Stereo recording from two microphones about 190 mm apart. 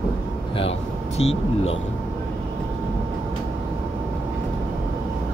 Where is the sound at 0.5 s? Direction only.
30° left (ahead or behind).